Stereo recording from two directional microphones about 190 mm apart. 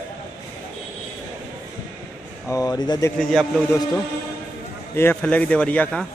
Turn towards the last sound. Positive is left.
turn(degrees=5)  # may be behind; listen again after turning